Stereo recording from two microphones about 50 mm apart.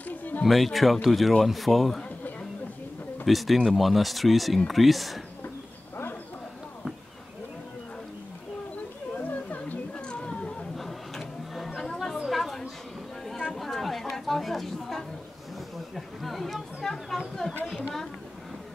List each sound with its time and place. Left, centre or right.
0.1 s a sound: left
0.5 s speech: centre
3.3 s speech: centre
9.1 s wild animals: left
10.8 s printer: centre
11.9 s chatter: centre